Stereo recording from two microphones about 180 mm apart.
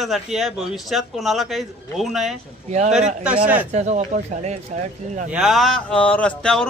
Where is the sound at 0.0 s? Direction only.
Centre (ahead or behind).